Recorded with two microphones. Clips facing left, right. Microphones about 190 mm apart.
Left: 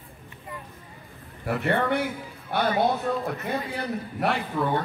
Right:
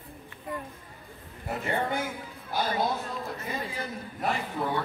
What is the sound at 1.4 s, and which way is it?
A man's voice, 65° left (ahead or behind).